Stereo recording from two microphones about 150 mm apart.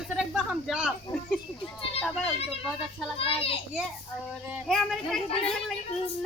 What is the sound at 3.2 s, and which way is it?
Speech, 40° left (ahead or behind).